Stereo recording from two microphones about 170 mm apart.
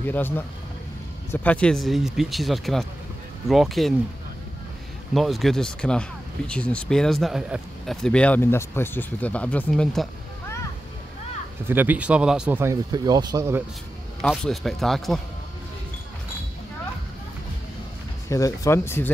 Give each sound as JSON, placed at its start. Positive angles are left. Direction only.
{"t": 0.0, "sound": "speech", "side_deg": 10}
{"t": 1.3, "sound": "speech", "side_deg": 10}
{"t": 5.1, "sound": "speech", "side_deg": 0}
{"t": 11.6, "sound": "speech", "side_deg": -10}
{"t": 14.2, "sound": "speech", "side_deg": 0}
{"t": 18.3, "sound": "speech", "side_deg": 20}